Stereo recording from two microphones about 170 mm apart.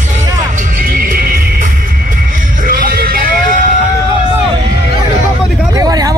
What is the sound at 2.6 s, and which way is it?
Music, 60° right (ahead or behind).